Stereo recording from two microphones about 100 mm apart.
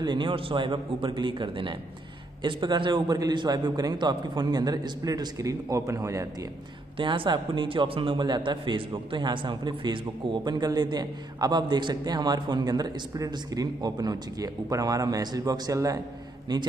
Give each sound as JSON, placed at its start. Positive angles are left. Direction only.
{"t": 0.0, "sound": "a man's voice", "side_deg": -50}
{"t": 7.0, "sound": "a man's voice", "side_deg": -55}
{"t": 16.5, "sound": "a man's voice", "side_deg": -45}